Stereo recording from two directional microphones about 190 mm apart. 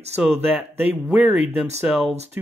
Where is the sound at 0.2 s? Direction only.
Centre (ahead or behind).